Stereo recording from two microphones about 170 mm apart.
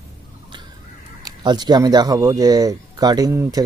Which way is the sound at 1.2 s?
25° right (ahead or behind).